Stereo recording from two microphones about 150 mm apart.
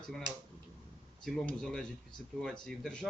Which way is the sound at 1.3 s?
5° left (ahead or behind).